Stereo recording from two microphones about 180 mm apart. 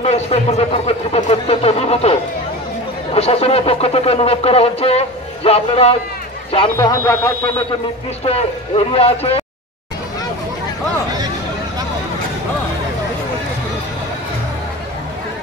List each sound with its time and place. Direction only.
0.0 s a man's voice: 35° left (ahead or behind)
6.9 s speech: 15° left (ahead or behind)
8.3 s speech: 35° left (ahead or behind)